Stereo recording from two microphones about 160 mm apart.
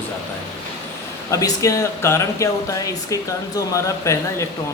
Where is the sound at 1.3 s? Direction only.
20° left (ahead or behind).